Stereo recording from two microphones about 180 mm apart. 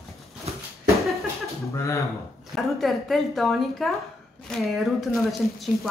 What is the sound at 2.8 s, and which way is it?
A woman's voice, centre (ahead or behind).